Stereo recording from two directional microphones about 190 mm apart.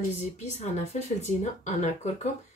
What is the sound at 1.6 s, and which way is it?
Speech, 35° left (ahead or behind).